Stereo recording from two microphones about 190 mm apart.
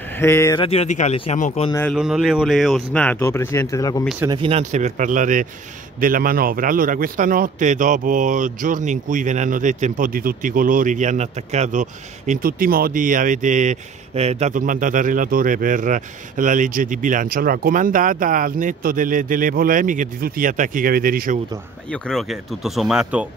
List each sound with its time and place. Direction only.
0.2 s speech: 15° left (ahead or behind)
0.6 s speech: 30° left (ahead or behind)
1.9 s speech: 5° right (ahead or behind); by 4.1 s 20° left (ahead or behind)
4.4 s speech: 30° right (ahead or behind); by 21.4 s 50° right (ahead or behind)
21.9 s speech: 5° left (ahead or behind)